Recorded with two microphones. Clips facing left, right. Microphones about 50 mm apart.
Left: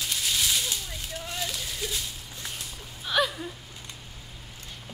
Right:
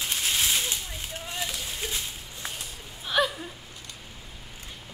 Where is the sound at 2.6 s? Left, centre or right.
Centre.